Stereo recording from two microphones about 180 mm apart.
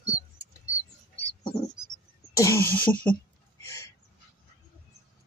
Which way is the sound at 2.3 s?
15° left (ahead or behind).